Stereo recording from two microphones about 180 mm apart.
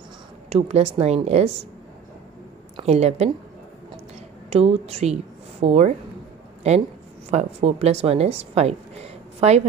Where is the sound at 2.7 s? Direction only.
35° right (ahead or behind).